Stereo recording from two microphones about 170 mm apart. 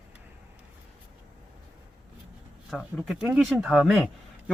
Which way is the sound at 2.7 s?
Centre (ahead or behind).